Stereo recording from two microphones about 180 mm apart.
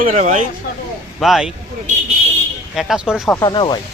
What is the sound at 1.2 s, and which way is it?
Speech, centre (ahead or behind).